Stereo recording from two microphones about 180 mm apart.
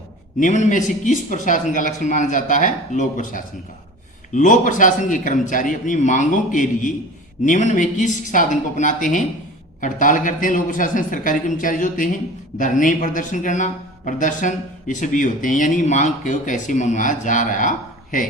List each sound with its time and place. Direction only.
0.3 s a man's voice: 45° left (ahead or behind)